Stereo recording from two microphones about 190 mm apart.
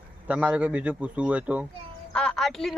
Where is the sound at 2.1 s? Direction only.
5° left (ahead or behind).